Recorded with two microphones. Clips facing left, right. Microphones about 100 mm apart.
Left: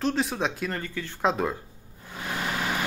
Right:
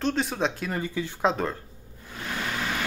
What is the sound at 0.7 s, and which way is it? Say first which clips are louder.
Speech: right 4 dB; 15° right (ahead or behind).